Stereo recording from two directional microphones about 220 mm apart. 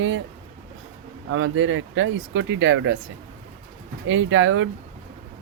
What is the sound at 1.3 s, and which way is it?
Speech, 60° right (ahead or behind).